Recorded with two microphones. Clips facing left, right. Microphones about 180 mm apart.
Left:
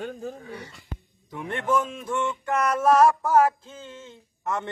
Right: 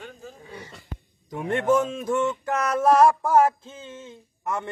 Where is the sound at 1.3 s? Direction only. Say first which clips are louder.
Right 4 dB; 45° right (ahead or behind).